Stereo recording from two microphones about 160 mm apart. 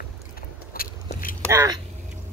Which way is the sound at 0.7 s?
65° left (ahead or behind).